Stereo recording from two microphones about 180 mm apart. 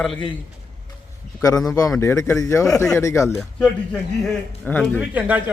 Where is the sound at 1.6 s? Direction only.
20° left (ahead or behind).